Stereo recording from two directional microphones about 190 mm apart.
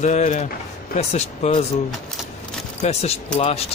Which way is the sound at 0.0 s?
40° left (ahead or behind).